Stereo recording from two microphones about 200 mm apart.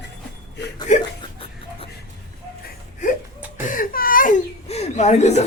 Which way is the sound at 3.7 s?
45° left (ahead or behind).